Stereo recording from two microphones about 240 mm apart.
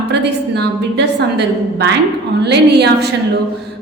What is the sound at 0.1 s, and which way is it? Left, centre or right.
A woman's voice, right.